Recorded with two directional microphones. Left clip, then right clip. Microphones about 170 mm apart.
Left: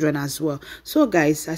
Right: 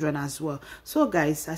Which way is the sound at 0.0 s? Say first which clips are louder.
Left 6 dB; 20° left (ahead or behind).